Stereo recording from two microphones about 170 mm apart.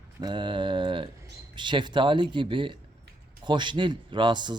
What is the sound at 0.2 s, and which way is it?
Mantra, 25° right (ahead or behind).